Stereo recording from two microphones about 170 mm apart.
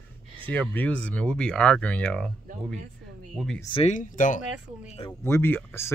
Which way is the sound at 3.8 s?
50° left (ahead or behind).